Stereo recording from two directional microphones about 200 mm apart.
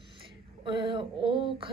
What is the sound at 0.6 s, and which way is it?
A woman's voice, 25° right (ahead or behind).